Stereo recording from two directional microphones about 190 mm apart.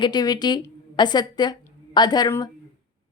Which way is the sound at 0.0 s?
20° left (ahead or behind).